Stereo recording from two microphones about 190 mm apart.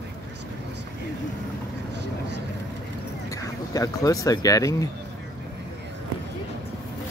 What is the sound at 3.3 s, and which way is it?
Speech, 20° left (ahead or behind).